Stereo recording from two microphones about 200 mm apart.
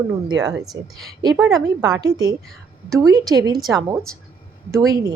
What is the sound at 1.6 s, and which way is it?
A woman's voice, 15° right (ahead or behind).